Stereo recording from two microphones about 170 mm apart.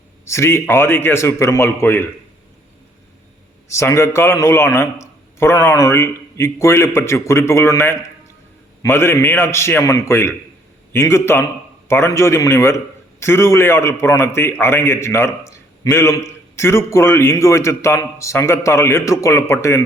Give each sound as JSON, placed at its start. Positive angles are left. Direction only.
{"t": 0.3, "sound": "a man's voice", "side_deg": 15}
{"t": 3.7, "sound": "a man's voice", "side_deg": 15}